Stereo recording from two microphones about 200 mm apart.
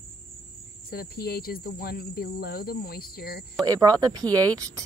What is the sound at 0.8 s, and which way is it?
Speech, 50° left (ahead or behind).